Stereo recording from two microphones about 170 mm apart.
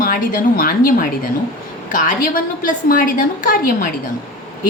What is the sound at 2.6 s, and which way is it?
A woman's voice, 55° left (ahead or behind).